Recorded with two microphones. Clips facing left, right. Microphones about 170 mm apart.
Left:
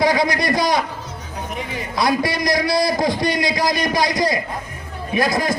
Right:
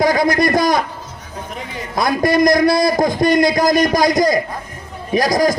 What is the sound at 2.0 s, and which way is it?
A man's voice, 50° right (ahead or behind).